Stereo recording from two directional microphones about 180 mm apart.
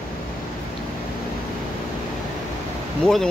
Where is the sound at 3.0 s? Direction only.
5° left (ahead or behind).